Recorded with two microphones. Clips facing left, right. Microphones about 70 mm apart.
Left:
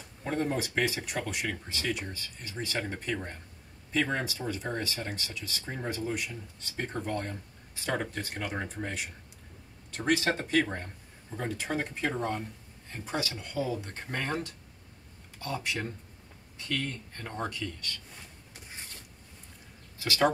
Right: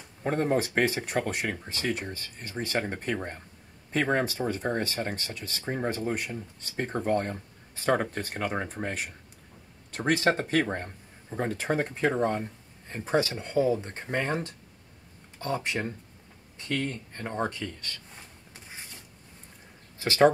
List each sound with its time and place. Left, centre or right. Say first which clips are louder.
0.2 s speech: right 5 dB; right
20.0 s speech: right 6 dB; right